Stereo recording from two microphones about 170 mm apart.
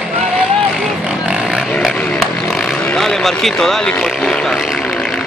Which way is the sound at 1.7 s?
5° left (ahead or behind).